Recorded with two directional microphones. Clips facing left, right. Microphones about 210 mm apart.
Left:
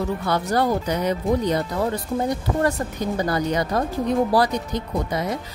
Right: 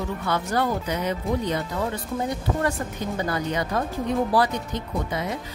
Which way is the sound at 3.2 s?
40° left (ahead or behind).